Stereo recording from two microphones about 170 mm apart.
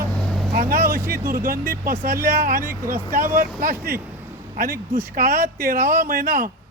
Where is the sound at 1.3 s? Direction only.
60° right (ahead or behind).